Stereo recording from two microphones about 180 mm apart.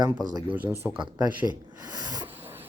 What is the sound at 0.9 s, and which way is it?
Speech, 25° right (ahead or behind).